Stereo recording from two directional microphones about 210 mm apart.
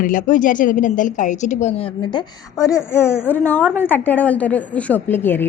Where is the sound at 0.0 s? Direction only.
40° left (ahead or behind).